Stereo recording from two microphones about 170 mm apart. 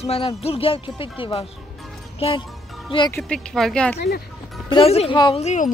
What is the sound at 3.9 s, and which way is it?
Speech, 75° left (ahead or behind).